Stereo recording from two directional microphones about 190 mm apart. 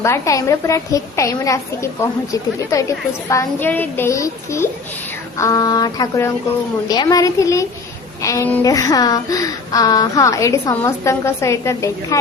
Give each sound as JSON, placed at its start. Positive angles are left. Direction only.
{"t": 0.0, "sound": "a woman's voice", "side_deg": 15}